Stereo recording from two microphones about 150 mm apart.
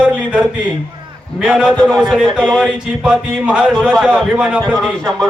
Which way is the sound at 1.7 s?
5° left (ahead or behind).